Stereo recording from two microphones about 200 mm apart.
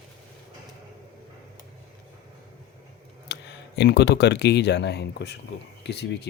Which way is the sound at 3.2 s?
60° left (ahead or behind).